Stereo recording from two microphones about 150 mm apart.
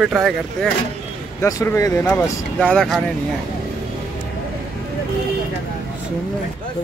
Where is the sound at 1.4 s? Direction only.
20° left (ahead or behind).